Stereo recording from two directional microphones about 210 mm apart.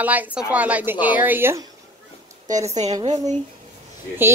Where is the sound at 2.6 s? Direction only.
30° right (ahead or behind).